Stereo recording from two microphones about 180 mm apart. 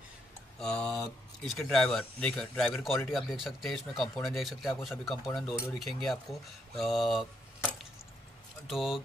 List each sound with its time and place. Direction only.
0.6 s speech: 5° left (ahead or behind)
8.6 s speech: centre (ahead or behind)